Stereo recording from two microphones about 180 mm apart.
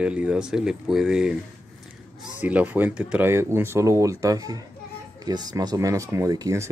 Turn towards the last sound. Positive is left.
turn(degrees=-20)  # may be behind; listen again after turning